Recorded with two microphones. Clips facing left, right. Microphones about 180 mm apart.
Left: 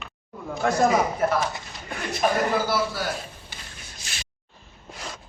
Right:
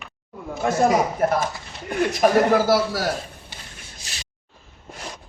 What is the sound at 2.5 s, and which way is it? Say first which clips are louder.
Speech: right 6 dB; 90° right.